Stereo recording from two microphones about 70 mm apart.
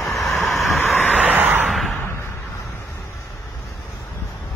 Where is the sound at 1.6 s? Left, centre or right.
Centre.